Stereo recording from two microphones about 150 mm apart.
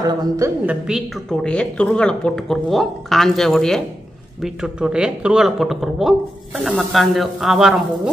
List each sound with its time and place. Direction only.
0.0 s a woman's voice: 25° right (ahead or behind)
0.7 s speech: 5° right (ahead or behind)
1.4 s speech: 5° left (ahead or behind)